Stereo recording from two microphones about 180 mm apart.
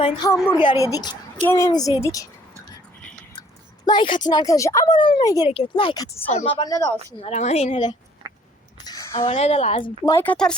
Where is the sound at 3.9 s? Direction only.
25° left (ahead or behind).